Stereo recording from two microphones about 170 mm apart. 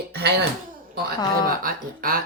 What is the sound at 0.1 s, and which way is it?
Throat clearing, 80° right.